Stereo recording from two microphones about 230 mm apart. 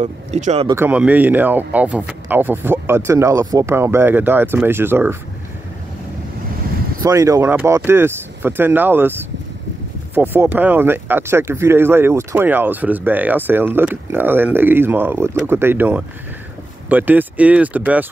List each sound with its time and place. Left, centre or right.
0.0 s speech: right
0.7 s speech: centre
7.0 s speech: centre
10.1 s speech: centre